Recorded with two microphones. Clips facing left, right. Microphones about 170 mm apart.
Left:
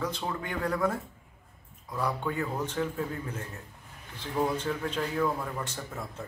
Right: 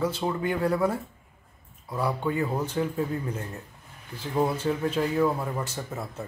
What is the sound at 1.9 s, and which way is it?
Speech, 10° right (ahead or behind).